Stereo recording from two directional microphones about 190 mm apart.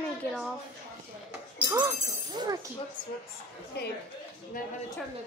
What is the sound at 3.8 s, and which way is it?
Speech, 60° left (ahead or behind).